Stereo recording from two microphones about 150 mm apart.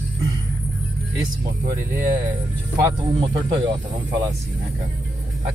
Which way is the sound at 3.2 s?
35° right (ahead or behind).